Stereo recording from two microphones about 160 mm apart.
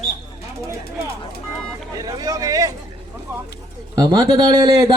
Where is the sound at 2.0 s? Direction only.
20° right (ahead or behind).